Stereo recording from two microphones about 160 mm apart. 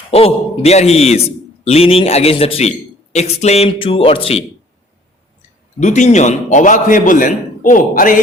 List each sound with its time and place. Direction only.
0.1 s speech: 40° left (ahead or behind)
5.8 s a man's voice: 50° left (ahead or behind)